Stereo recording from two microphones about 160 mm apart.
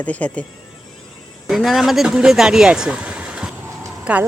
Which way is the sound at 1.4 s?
Centre (ahead or behind).